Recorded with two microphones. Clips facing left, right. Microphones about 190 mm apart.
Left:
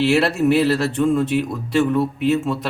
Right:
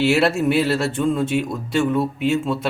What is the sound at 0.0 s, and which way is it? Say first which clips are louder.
Speech: left 1 dB; centre (ahead or behind).